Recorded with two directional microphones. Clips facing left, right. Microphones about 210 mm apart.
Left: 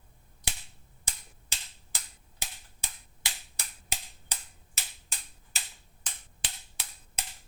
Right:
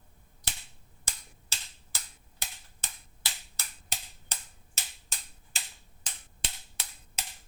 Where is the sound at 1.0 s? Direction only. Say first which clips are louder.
Left 1 dB; 15° left (ahead or behind).